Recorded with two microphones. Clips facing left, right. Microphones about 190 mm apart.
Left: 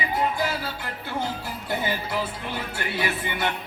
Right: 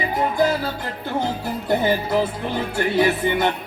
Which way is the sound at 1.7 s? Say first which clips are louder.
Right 8 dB; 50° right (ahead or behind).